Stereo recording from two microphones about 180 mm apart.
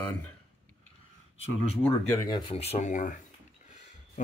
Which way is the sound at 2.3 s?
30° left (ahead or behind).